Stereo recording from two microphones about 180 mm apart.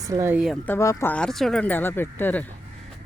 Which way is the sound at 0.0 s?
15° right (ahead or behind).